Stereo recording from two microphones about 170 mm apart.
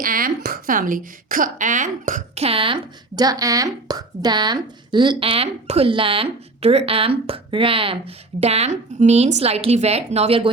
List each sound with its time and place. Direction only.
0.0 s a woman's voice: 55° right (ahead or behind); by 10.5 s 35° right (ahead or behind)